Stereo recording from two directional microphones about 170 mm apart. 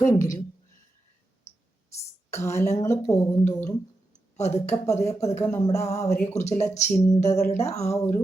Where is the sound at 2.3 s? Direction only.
15° left (ahead or behind).